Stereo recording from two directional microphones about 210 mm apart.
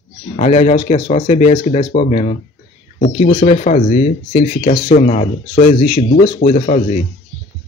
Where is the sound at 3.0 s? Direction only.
50° left (ahead or behind).